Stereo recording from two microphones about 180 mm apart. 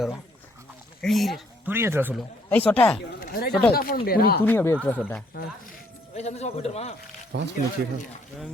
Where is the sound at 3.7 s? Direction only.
55° left (ahead or behind).